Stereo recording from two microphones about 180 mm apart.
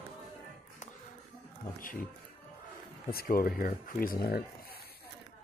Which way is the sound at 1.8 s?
50° left (ahead or behind).